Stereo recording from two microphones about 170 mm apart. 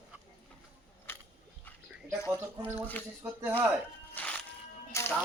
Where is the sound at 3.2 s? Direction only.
15° right (ahead or behind).